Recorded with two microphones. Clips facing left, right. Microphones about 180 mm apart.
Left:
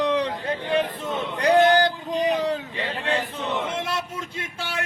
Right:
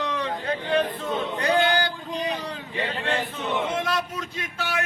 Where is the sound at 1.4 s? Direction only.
40° left (ahead or behind).